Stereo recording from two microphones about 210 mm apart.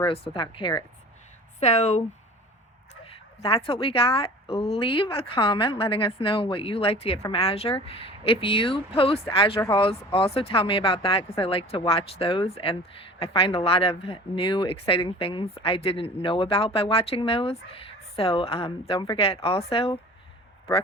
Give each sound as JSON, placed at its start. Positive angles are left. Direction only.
{"t": 0.0, "sound": "speech", "side_deg": 25}
{"t": 3.4, "sound": "speech", "side_deg": 25}